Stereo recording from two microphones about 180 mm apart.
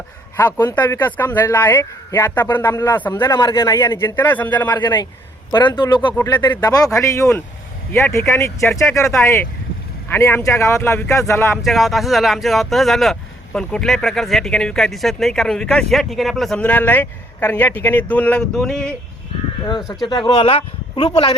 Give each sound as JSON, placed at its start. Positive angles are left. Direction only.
{"t": 0.3, "sound": "speech", "side_deg": 10}
{"t": 4.7, "sound": "speech", "side_deg": 25}
{"t": 10.1, "sound": "speech", "side_deg": 10}
{"t": 11.5, "sound": "speech", "side_deg": 0}
{"t": 19.6, "sound": "speech", "side_deg": 25}